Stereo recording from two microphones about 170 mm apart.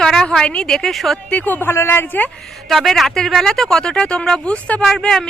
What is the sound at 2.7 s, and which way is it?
Speech, centre (ahead or behind).